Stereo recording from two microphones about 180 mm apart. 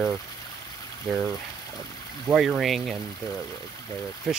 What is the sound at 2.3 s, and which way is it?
Speech, centre (ahead or behind).